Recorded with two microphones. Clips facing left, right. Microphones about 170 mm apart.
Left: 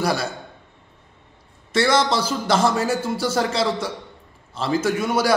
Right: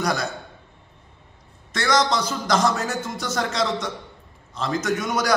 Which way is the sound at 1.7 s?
30° left (ahead or behind).